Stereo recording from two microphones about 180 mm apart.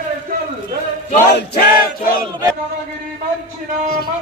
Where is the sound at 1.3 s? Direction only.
65° left (ahead or behind).